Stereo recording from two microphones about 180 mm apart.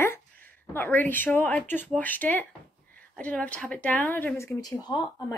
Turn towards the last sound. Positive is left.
turn(degrees=25)  # may be behind; listen again after turning